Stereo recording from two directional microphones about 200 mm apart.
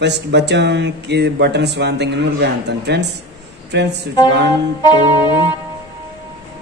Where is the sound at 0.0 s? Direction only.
60° right (ahead or behind).